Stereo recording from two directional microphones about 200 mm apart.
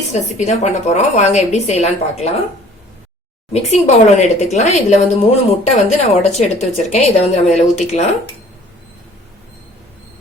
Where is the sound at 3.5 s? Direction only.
35° left (ahead or behind).